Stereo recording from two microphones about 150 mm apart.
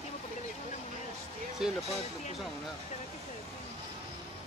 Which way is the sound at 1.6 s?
5° right (ahead or behind).